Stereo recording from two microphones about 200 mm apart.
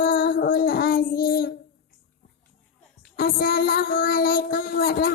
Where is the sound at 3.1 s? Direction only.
50° left (ahead or behind).